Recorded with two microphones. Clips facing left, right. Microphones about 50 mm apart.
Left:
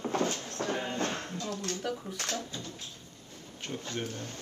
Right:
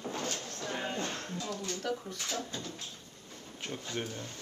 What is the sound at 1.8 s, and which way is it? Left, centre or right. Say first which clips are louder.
Speech: right 1 dB; centre.